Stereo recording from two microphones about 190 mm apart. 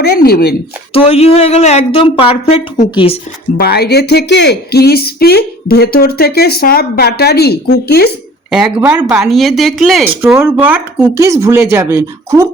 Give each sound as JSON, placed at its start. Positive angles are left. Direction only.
{"t": 0.0, "sound": "speech", "side_deg": 55}
{"t": 0.9, "sound": "a woman's voice", "side_deg": 35}
{"t": 3.6, "sound": "speech", "side_deg": 55}
{"t": 8.4, "sound": "speech", "side_deg": -5}